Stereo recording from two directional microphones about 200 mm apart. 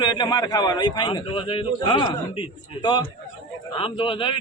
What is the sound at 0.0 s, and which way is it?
A man's voice, 20° left (ahead or behind).